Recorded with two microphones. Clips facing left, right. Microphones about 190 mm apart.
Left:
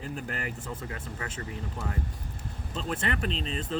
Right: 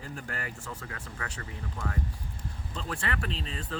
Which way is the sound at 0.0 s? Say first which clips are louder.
Left 4 dB; 20° left (ahead or behind).